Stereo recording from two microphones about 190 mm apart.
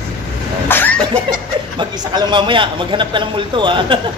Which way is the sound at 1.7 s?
25° right (ahead or behind).